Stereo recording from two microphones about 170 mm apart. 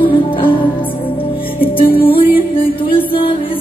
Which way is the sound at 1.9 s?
35° left (ahead or behind).